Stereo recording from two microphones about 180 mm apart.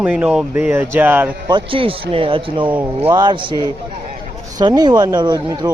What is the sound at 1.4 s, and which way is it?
Speech, 25° right (ahead or behind).